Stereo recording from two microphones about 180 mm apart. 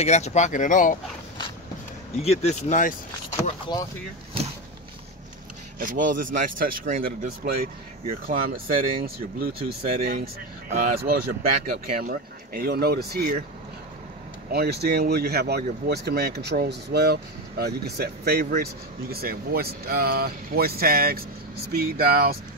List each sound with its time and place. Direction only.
0.0 s speech: 40° left (ahead or behind)
2.2 s speech: 40° left (ahead or behind)
3.4 s speech: 25° left (ahead or behind)
5.8 s speech: 50° right (ahead or behind)
14.5 s speech: 65° right (ahead or behind)